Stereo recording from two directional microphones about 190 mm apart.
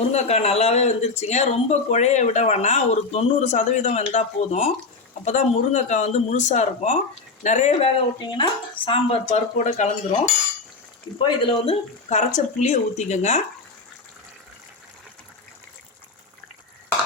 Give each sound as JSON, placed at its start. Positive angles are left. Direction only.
{"t": 0.1, "sound": "speech", "side_deg": 35}
{"t": 8.2, "sound": "speech", "side_deg": 25}